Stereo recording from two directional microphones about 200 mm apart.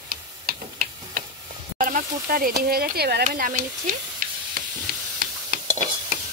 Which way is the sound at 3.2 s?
40° right (ahead or behind).